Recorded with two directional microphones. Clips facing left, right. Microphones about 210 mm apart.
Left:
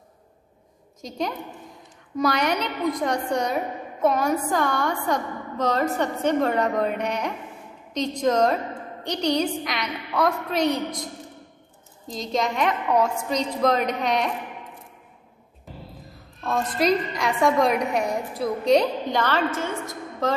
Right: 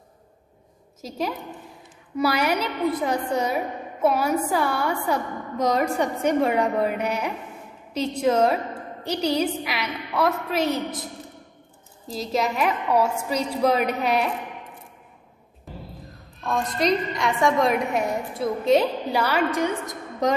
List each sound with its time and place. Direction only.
1.0 s a woman's voice: 5° right (ahead or behind)
12.1 s a woman's voice: 5° right (ahead or behind)
16.4 s a woman's voice: centre (ahead or behind); by 20.3 s 15° right (ahead or behind)